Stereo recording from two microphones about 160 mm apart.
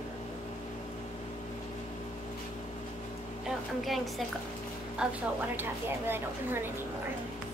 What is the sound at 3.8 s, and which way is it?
A woman's voice, centre (ahead or behind).